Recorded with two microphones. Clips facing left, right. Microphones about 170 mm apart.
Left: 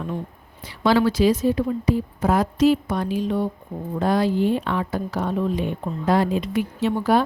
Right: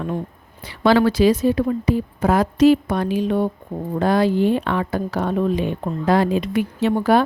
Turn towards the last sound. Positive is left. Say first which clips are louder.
# right 3 dB
turn(degrees=-65)  # may be behind; listen again after turning